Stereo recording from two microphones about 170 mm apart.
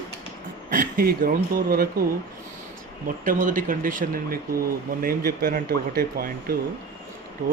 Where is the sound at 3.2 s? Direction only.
50° right (ahead or behind).